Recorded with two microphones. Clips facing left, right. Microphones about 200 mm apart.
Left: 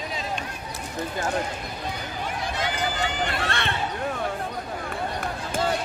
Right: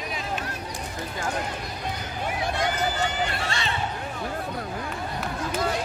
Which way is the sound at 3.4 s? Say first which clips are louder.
Left 2 dB; 60° left (ahead or behind).